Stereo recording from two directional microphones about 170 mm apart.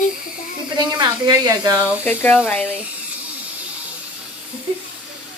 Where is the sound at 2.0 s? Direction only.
10° left (ahead or behind).